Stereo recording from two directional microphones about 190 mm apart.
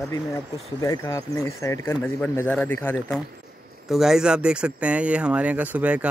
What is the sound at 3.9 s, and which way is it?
Speech, centre (ahead or behind).